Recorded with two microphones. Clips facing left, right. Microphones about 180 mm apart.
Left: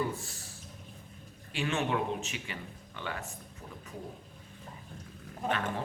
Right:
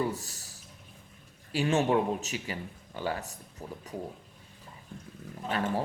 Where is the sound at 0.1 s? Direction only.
40° right (ahead or behind).